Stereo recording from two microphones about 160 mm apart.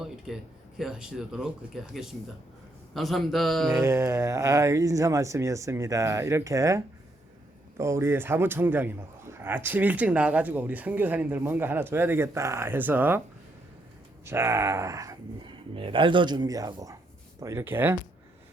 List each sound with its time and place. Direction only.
0.3 s speech: centre (ahead or behind)
3.7 s a man's voice: 15° right (ahead or behind)
14.3 s speech: 15° right (ahead or behind)
15.7 s a man's voice: 30° right (ahead or behind); by 17.9 s 15° right (ahead or behind)